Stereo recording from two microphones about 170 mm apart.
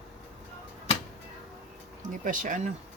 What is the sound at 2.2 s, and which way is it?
Speech, 50° right (ahead or behind).